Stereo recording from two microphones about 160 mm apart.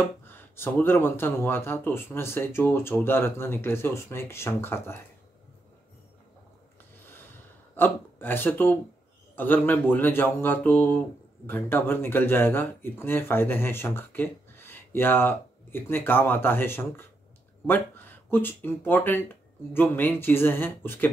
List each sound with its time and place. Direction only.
0.3 s speech: 15° left (ahead or behind)
7.7 s speech: 10° left (ahead or behind)